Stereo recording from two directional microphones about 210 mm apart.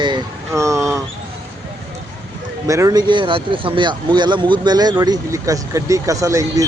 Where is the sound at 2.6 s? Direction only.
15° right (ahead or behind).